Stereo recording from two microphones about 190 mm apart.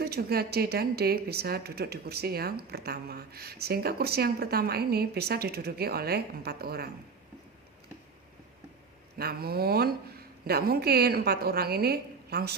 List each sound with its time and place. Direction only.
0.0 s speech: 55° right (ahead or behind)
9.1 s speech: 55° right (ahead or behind)